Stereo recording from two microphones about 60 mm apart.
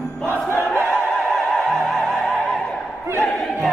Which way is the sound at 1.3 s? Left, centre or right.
Centre.